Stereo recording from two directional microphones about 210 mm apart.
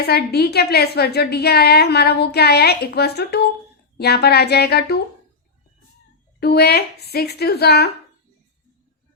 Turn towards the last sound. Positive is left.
turn(degrees=50)  # may be behind; listen again after turning